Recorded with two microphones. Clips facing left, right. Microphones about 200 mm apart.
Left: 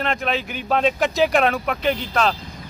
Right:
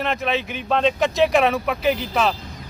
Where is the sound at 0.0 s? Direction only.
Centre (ahead or behind).